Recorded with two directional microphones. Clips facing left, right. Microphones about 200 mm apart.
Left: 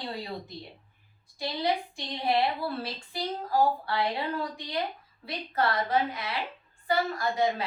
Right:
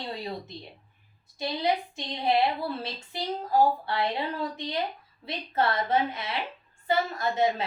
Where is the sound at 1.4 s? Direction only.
20° right (ahead or behind).